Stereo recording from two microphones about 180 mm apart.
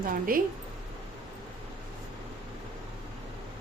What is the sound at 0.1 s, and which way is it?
Speech, 50° right (ahead or behind).